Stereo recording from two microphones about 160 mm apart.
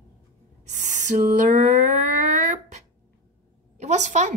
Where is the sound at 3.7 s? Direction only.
45° right (ahead or behind).